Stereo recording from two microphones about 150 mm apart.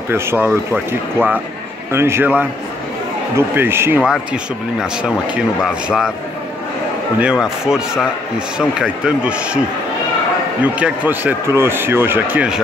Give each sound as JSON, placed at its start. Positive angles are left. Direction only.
{"t": 0.1, "sound": "speech", "side_deg": -15}
{"t": 1.9, "sound": "speech", "side_deg": -15}
{"t": 4.0, "sound": "speech", "side_deg": -5}
{"t": 5.9, "sound": "speech", "side_deg": 0}
{"t": 7.2, "sound": "speech", "side_deg": -5}
{"t": 10.6, "sound": "speech", "side_deg": -10}